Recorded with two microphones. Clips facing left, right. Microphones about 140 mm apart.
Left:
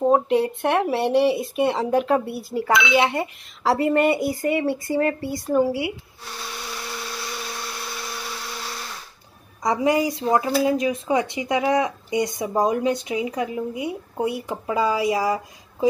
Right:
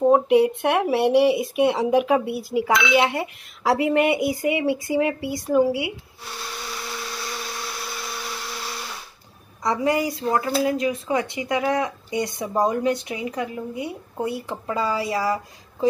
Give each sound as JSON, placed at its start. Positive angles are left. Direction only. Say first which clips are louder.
{"t": 0.0, "sound": "speech", "louder": "right 2 dB", "side_deg": -10}
{"t": 5.7, "sound": "speech", "louder": "even", "side_deg": -15}
{"t": 9.6, "sound": "speech", "louder": "left 2 dB", "side_deg": 15}